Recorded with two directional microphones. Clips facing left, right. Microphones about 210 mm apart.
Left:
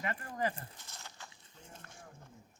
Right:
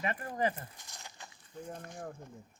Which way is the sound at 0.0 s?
25° right (ahead or behind).